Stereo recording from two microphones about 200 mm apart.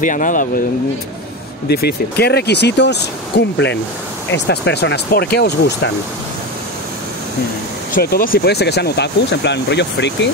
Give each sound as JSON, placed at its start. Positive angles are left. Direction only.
{"t": 0.0, "sound": "speech", "side_deg": 40}
{"t": 1.7, "sound": "speech", "side_deg": 50}
{"t": 7.9, "sound": "speech", "side_deg": 45}